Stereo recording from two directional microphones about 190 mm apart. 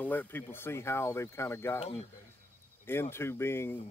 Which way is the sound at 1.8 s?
30° left (ahead or behind).